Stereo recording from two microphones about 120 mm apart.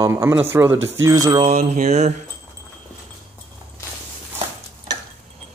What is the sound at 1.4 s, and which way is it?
Mantra, 75° right (ahead or behind).